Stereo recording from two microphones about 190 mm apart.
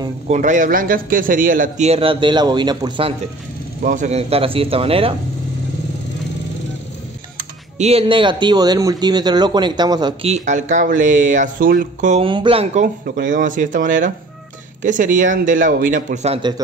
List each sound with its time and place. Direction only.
0.3 s a man's voice: 40° right (ahead or behind); by 3.2 s 25° right (ahead or behind)
3.8 s a man's voice: 40° right (ahead or behind)
7.7 s speech: 35° right (ahead or behind)
10.3 s speech: 40° right (ahead or behind)
12.3 s speech: 25° right (ahead or behind)
12.8 s speech: 45° right (ahead or behind)